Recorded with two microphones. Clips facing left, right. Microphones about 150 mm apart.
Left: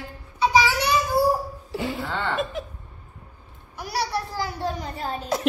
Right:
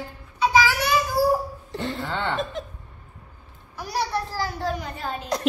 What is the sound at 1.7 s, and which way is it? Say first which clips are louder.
Speech: left 1 dB; 5° left (ahead or behind).